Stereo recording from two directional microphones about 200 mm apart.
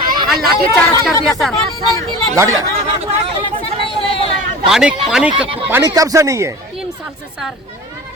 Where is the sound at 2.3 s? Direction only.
15° right (ahead or behind).